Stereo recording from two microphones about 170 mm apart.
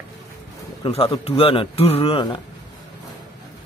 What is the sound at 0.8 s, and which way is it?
A man's voice, 30° left (ahead or behind).